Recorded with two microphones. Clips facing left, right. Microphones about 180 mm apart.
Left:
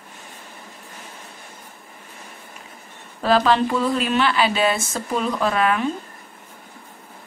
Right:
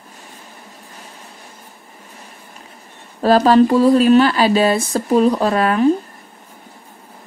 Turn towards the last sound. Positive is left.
turn(degrees=-40)  # may be behind; listen again after turning